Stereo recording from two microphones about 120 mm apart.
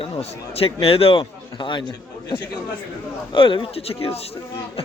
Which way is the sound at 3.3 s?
45° left (ahead or behind).